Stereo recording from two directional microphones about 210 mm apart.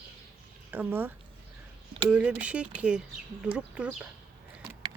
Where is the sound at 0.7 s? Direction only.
10° right (ahead or behind).